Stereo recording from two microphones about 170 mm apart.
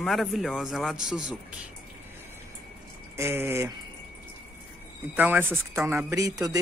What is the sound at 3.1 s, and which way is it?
Speech, 15° right (ahead or behind).